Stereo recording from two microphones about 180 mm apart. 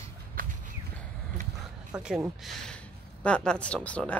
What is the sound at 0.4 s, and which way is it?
Walk, 50° right (ahead or behind).